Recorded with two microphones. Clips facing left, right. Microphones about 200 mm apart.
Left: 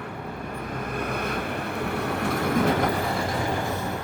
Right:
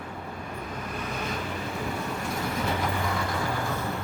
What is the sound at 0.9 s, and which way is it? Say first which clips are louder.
Vehicle: left 4 dB; 55° left (ahead or behind).